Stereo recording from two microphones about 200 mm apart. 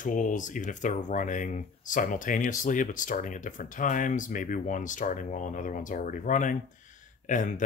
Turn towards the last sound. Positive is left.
turn(degrees=40)  # may be behind; listen again after turning